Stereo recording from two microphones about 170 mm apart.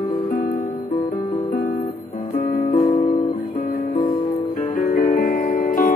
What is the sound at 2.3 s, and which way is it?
Music, 40° left (ahead or behind).